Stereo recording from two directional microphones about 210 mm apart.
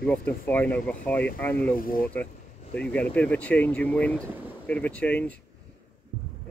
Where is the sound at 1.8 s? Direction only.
40° left (ahead or behind).